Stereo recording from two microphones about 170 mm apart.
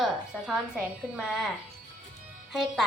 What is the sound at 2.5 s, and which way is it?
Speech, centre (ahead or behind).